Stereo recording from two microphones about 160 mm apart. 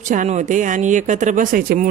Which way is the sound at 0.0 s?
50° right (ahead or behind).